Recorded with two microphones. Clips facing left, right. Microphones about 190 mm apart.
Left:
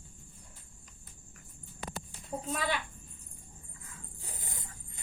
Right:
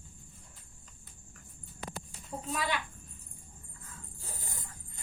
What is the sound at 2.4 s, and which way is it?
Speech, 40° left (ahead or behind).